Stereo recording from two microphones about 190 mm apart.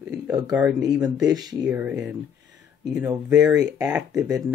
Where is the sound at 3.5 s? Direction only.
20° right (ahead or behind).